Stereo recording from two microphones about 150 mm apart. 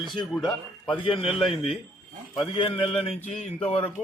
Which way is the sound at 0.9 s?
35° left (ahead or behind).